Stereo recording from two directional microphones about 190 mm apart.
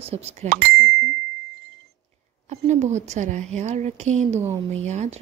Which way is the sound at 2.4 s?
35° right (ahead or behind).